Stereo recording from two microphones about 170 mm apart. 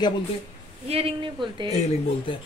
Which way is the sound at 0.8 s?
35° right (ahead or behind).